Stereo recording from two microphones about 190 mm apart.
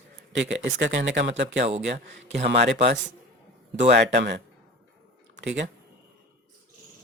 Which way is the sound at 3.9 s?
65° right (ahead or behind).